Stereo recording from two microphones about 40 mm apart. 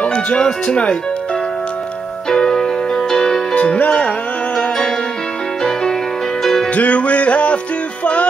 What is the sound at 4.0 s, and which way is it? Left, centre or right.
Music, left.